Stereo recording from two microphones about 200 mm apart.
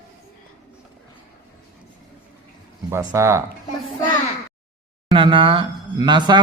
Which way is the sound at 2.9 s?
15° right (ahead or behind).